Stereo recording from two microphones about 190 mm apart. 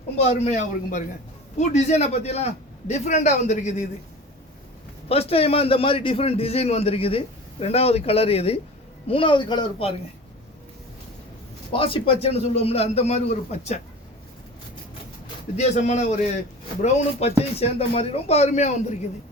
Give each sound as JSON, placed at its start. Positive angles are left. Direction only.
{"t": 0.3, "sound": "a man's voice", "side_deg": 35}
{"t": 5.0, "sound": "a man's voice", "side_deg": 30}
{"t": 11.7, "sound": "a man's voice", "side_deg": 30}
{"t": 15.5, "sound": "a man's voice", "side_deg": 35}